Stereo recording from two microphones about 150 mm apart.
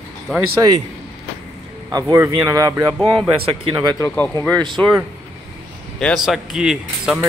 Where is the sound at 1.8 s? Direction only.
25° right (ahead or behind).